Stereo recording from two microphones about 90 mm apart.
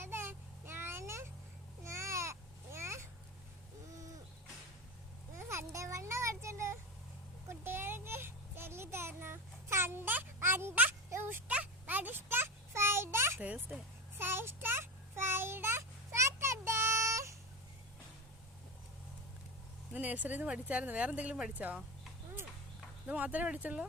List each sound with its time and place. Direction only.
0.0 s vehicle: 25° right (ahead or behind)
1.8 s baby cry: 35° right (ahead or behind)
5.5 s children playing: 30° right (ahead or behind)
7.4 s a sound: 25° right (ahead or behind)
13.4 s a sound: 15° right (ahead or behind); by 17.3 s 35° right (ahead or behind)
19.9 s speech: 15° right (ahead or behind)
23.0 s speech: 15° right (ahead or behind)